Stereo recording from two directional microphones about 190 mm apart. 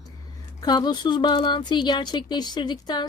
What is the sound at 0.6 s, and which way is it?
A woman's voice, 20° left (ahead or behind).